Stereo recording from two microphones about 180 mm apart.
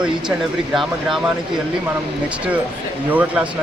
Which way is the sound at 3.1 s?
5° right (ahead or behind).